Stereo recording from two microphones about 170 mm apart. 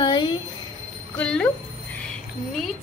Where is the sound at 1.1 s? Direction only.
5° left (ahead or behind).